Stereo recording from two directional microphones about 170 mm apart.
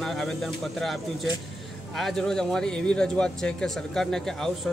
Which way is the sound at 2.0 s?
Centre (ahead or behind).